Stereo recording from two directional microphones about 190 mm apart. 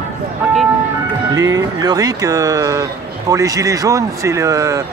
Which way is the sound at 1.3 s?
20° right (ahead or behind).